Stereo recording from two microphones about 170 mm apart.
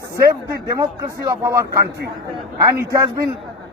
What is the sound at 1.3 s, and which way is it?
Speech, 20° right (ahead or behind).